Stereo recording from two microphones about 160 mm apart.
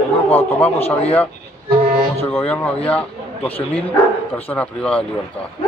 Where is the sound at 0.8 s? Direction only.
40° left (ahead or behind).